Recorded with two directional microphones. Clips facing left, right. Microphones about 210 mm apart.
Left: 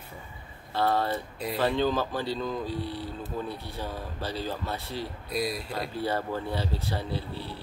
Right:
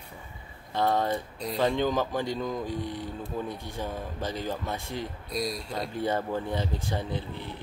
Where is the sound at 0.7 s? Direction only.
15° right (ahead or behind).